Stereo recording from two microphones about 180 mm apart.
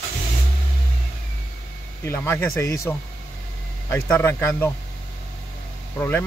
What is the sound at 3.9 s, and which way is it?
Speech, 10° left (ahead or behind).